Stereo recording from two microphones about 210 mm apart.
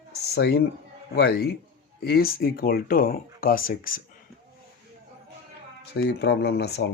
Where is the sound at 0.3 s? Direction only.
50° left (ahead or behind).